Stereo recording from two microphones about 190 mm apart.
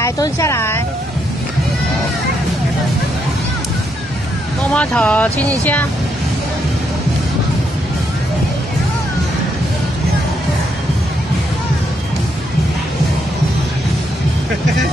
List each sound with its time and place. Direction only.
0.0 s speech: 15° left (ahead or behind)
4.7 s speech: 5° left (ahead or behind)